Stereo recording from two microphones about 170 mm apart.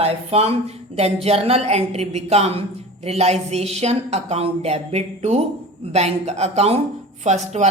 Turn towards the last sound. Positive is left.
turn(degrees=-40)  # may be behind; listen again after turning